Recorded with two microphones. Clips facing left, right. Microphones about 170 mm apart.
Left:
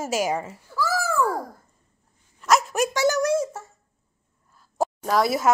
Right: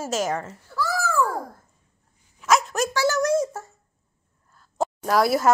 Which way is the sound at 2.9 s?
15° left (ahead or behind).